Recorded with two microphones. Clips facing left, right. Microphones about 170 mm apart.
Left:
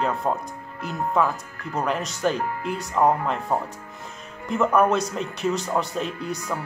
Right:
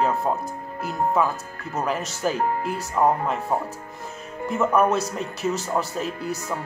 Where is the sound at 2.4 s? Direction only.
40° right (ahead or behind).